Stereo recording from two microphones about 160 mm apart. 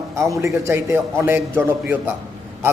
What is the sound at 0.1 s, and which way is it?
A man's voice, 20° right (ahead or behind).